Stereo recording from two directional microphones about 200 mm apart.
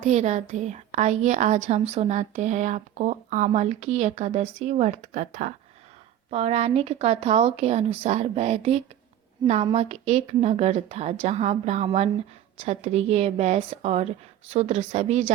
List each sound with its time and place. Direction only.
0.0 s a woman's voice: 35° right (ahead or behind)